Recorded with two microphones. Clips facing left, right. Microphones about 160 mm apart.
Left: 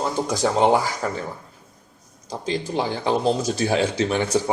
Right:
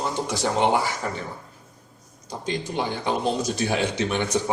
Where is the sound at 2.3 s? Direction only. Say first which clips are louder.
Left 3 dB; 35° left (ahead or behind).